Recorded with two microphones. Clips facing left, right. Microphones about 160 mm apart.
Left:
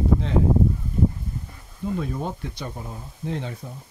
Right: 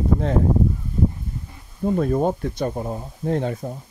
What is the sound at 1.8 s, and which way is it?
Speech, 50° right (ahead or behind).